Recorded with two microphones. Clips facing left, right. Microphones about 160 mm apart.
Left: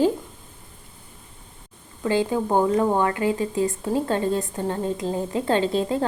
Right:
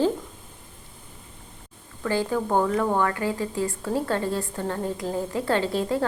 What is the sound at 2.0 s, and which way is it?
A woman's voice, 20° left (ahead or behind).